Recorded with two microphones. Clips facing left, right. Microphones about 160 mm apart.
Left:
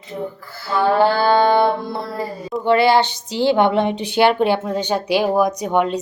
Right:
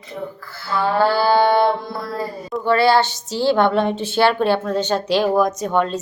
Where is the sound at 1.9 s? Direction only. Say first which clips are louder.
Left 1 dB; 25° left (ahead or behind).